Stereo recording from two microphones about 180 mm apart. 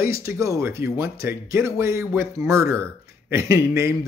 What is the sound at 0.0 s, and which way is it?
Speech, 15° right (ahead or behind).